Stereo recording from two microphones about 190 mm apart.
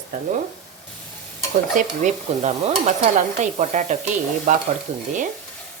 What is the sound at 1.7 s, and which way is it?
Stir, 40° right (ahead or behind).